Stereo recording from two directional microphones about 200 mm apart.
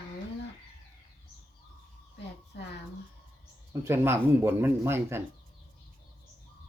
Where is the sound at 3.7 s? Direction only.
15° right (ahead or behind).